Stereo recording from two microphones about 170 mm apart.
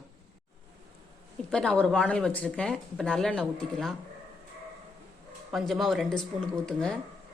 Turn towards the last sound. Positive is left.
turn(degrees=5)  # may be behind; listen again after turning